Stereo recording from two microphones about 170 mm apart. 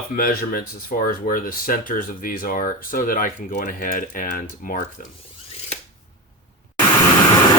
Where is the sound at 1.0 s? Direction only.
55° left (ahead or behind).